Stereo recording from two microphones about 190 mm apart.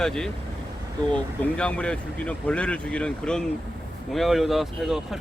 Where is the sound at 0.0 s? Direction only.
5° left (ahead or behind).